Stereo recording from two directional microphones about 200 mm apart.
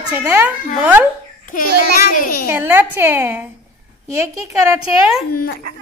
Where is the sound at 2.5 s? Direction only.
10° right (ahead or behind).